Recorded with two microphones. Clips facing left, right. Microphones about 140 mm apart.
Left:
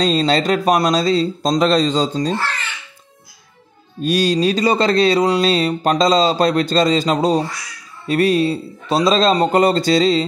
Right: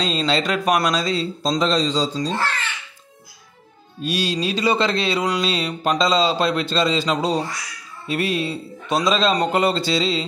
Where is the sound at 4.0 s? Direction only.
45° left (ahead or behind).